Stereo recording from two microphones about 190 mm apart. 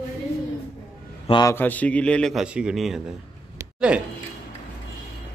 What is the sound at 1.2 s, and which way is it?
Speech, 25° left (ahead or behind).